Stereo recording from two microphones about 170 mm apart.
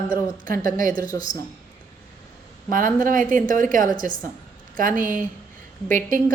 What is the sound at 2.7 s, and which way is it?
A woman's voice, 50° right (ahead or behind).